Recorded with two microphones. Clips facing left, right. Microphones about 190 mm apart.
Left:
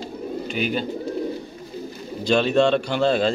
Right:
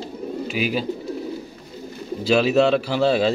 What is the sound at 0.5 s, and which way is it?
Speech, 5° right (ahead or behind).